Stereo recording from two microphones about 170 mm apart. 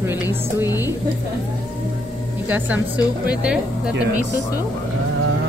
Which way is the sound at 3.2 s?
5° right (ahead or behind).